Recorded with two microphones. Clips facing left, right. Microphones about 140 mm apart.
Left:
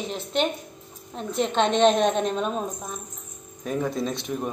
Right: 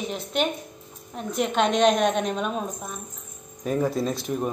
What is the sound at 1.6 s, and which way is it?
Speech, 30° left (ahead or behind).